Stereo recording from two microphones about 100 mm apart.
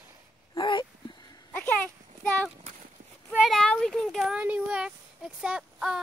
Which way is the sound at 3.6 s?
10° left (ahead or behind).